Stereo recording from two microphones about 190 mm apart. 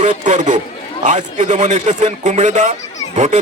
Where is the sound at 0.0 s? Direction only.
40° right (ahead or behind).